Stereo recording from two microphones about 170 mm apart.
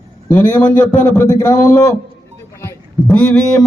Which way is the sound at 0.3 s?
10° left (ahead or behind).